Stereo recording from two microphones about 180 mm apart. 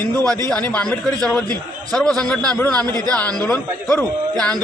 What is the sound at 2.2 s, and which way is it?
A man's voice, 5° left (ahead or behind).